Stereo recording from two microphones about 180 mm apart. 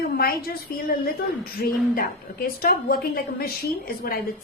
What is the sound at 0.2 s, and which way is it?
Speech, 55° left (ahead or behind).